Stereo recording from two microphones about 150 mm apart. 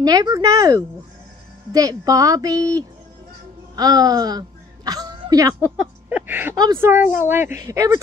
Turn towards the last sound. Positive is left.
turn(degrees=-20)  # may be behind; listen again after turning